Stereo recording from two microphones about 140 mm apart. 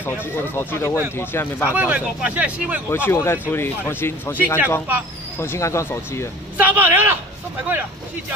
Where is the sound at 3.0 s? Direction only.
15° left (ahead or behind).